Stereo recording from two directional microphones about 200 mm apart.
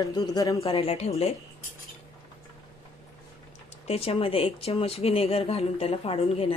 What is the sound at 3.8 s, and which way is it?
Speech, 30° left (ahead or behind).